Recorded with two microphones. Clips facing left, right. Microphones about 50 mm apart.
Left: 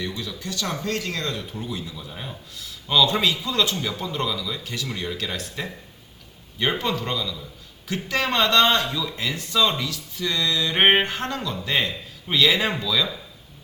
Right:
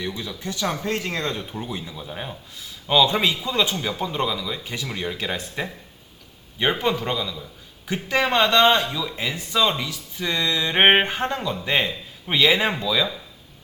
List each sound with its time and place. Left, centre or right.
0.0 s speech: right